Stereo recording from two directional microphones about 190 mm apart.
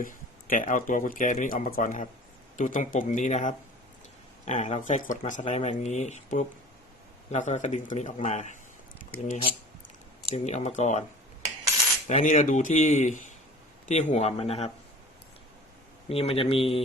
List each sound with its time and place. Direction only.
0.0 s speech: 45° left (ahead or behind)
12.0 s speech: 35° left (ahead or behind)
16.0 s speech: 30° left (ahead or behind)